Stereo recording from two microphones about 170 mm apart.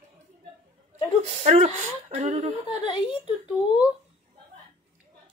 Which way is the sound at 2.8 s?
25° left (ahead or behind).